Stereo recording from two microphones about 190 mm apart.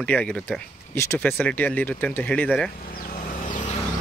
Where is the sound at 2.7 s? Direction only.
50° left (ahead or behind).